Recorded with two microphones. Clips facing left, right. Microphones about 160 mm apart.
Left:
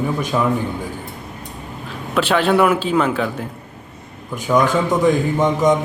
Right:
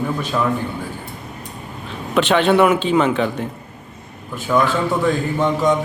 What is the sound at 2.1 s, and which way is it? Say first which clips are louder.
A man's voice: right 1 dB; 5° left (ahead or behind).